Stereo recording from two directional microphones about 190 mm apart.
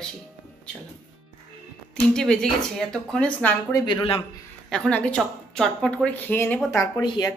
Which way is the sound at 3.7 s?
20° left (ahead or behind).